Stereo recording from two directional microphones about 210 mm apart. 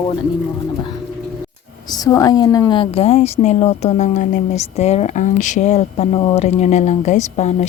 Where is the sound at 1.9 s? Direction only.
15° left (ahead or behind).